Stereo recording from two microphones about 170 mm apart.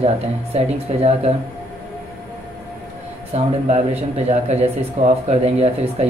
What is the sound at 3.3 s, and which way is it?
Speech, 40° right (ahead or behind).